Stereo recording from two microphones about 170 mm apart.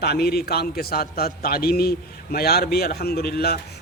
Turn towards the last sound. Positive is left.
turn(degrees=70)  # may be behind; listen again after turning